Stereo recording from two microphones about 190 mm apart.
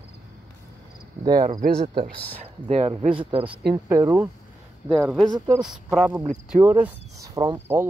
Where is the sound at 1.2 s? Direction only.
20° right (ahead or behind).